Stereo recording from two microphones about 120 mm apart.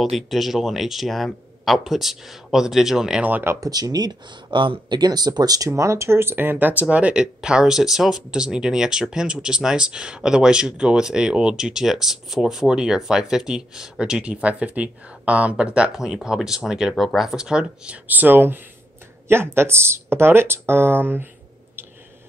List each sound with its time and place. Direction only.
0.0 s speech: centre (ahead or behind)
3.6 s speech: 30° right (ahead or behind)